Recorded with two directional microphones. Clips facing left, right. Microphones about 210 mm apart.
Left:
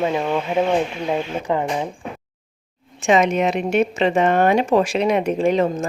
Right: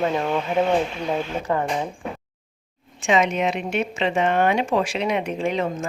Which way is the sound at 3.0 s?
45° left (ahead or behind).